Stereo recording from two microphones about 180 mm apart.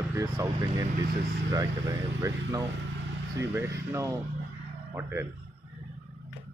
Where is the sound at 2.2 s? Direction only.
15° right (ahead or behind).